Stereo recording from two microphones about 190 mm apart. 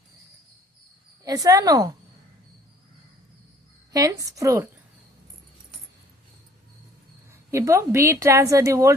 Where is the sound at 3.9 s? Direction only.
20° right (ahead or behind).